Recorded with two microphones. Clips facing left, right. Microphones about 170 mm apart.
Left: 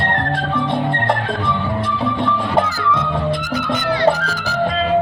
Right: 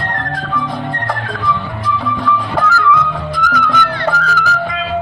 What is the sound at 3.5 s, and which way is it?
Music, 25° left (ahead or behind).